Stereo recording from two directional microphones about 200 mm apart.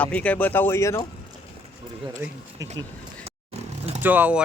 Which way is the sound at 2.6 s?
15° right (ahead or behind).